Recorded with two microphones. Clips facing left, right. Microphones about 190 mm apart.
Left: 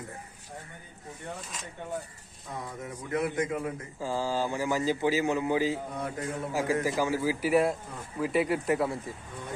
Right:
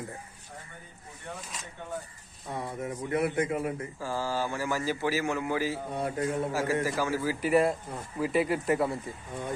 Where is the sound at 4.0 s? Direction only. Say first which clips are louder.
Left 2 dB; 15° left (ahead or behind); by 8.9 s centre (ahead or behind).